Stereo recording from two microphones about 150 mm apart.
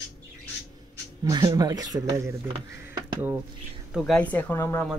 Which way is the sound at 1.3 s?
25° right (ahead or behind).